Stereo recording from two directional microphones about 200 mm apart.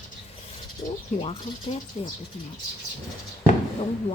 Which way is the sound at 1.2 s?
30° left (ahead or behind).